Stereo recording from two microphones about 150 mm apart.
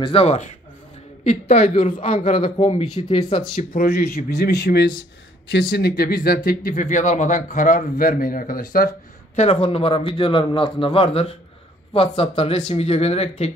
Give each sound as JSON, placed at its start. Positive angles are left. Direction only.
{"t": 0.0, "sound": "a woman's voice", "side_deg": 40}
{"t": 2.7, "sound": "a woman's voice", "side_deg": 45}
{"t": 3.5, "sound": "speech", "side_deg": 75}
{"t": 6.7, "sound": "a man's voice", "side_deg": 55}
{"t": 9.3, "sound": "a man's voice", "side_deg": 40}